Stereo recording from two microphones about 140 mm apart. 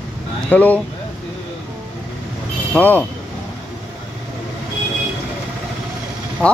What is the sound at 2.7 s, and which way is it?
Speech, 15° left (ahead or behind).